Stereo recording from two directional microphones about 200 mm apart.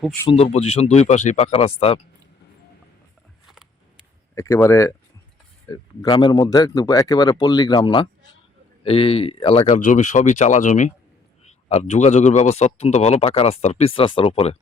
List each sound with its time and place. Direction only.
0.3 s speech: 30° left (ahead or behind)
3.4 s a sound: centre (ahead or behind)
4.4 s speech: 15° left (ahead or behind)
9.7 s speech: 40° left (ahead or behind)